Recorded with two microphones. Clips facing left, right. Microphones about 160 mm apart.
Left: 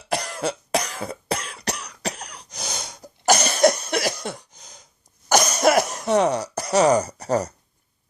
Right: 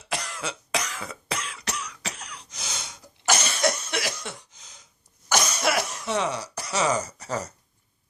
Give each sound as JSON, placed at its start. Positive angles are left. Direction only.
{"t": 0.1, "sound": "cough", "side_deg": 35}